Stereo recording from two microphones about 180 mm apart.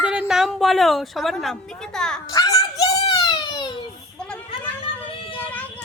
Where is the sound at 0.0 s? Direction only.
5° right (ahead or behind).